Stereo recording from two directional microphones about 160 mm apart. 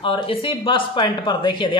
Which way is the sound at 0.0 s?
30° left (ahead or behind).